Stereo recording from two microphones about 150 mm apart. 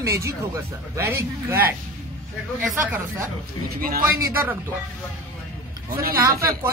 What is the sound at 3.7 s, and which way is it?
Speech, 75° right (ahead or behind).